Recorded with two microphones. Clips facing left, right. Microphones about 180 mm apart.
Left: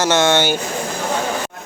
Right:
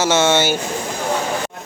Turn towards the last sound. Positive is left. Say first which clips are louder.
# even
turn(degrees=-5)  # may be behind; listen again after turning